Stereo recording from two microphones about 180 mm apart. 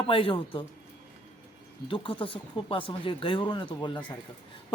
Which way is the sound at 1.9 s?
30° left (ahead or behind).